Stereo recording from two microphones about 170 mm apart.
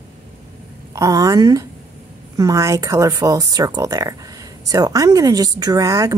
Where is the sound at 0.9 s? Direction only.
20° right (ahead or behind).